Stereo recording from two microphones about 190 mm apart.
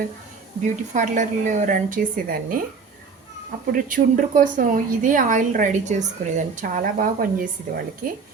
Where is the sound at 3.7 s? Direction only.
45° right (ahead or behind).